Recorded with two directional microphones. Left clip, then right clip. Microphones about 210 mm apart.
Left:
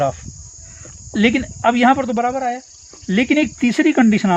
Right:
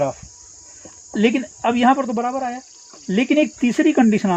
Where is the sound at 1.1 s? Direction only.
50° left (ahead or behind).